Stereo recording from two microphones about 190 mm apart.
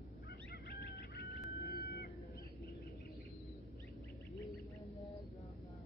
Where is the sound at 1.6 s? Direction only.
55° left (ahead or behind).